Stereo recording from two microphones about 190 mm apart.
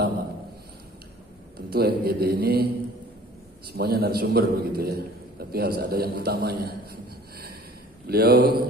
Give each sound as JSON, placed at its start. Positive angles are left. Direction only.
{"t": 1.7, "sound": "a man's voice", "side_deg": -55}
{"t": 3.7, "sound": "a man's voice", "side_deg": -55}